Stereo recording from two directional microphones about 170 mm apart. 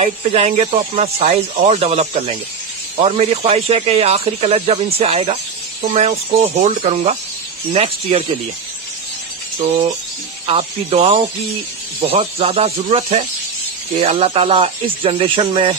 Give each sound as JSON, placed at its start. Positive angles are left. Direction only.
{"t": 0.0, "sound": "speech", "side_deg": -40}
{"t": 10.4, "sound": "speech", "side_deg": -35}